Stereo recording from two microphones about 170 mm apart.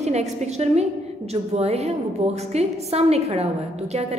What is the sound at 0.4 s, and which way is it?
A woman's voice, 40° right (ahead or behind).